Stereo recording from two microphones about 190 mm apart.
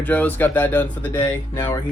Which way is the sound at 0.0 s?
10° left (ahead or behind).